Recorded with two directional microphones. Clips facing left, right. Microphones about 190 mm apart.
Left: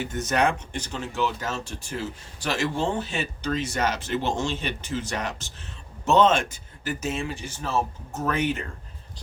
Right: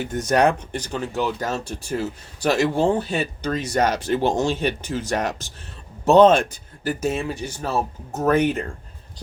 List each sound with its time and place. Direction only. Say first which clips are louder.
0.3 s speech: right 6 dB; 40° right (ahead or behind)